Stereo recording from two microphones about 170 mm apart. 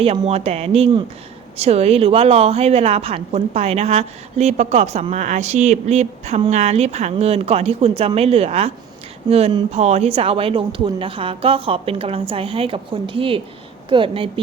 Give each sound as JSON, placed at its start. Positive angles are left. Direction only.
{"t": 0.0, "sound": "a woman's voice", "side_deg": -35}